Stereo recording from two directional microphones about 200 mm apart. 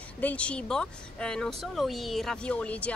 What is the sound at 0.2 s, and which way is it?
A woman's voice, 5° left (ahead or behind).